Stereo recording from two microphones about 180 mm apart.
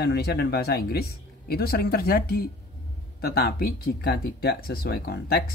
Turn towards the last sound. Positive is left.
turn(degrees=60)  # may be behind; listen again after turning